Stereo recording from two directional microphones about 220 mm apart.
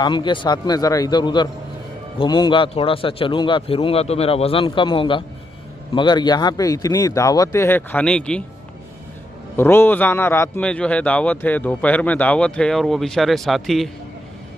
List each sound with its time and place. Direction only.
0.0 s a man's voice: 20° left (ahead or behind); by 8.5 s 5° left (ahead or behind)
9.6 s a man's voice: 10° left (ahead or behind)